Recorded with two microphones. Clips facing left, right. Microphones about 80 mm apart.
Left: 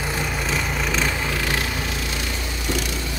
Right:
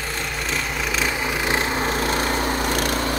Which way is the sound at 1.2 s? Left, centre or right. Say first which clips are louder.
Right 2 dB; centre.